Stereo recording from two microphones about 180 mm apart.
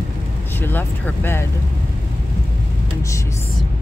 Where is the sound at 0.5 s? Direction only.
10° left (ahead or behind).